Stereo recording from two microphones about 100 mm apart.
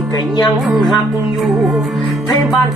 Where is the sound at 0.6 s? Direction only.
Centre (ahead or behind).